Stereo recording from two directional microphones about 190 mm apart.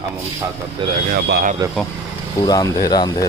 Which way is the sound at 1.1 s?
50° right (ahead or behind).